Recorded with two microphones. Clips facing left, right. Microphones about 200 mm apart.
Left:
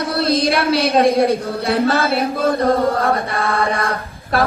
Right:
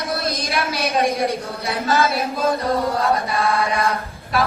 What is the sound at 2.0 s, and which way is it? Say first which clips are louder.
Speech: left 2 dB; 30° left (ahead or behind).